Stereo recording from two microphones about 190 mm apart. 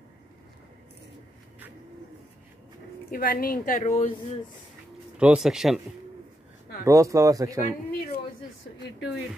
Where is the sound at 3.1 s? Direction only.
50° left (ahead or behind).